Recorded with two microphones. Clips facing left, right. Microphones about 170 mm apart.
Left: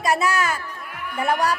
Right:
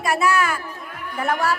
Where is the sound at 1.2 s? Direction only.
15° left (ahead or behind).